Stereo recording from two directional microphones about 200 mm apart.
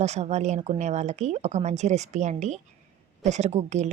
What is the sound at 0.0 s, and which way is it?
Speech, 35° right (ahead or behind).